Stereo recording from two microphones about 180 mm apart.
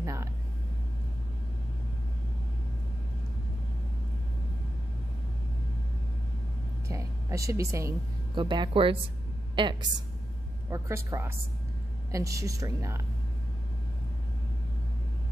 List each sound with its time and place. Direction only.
0.0 s vehicle: 15° right (ahead or behind)
6.9 s a woman's voice: 20° right (ahead or behind)